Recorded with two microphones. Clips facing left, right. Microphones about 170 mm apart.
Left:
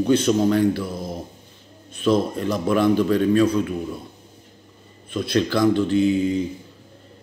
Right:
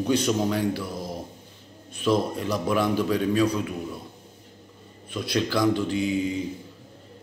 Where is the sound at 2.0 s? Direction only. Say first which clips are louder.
Left 4 dB; 10° right (ahead or behind).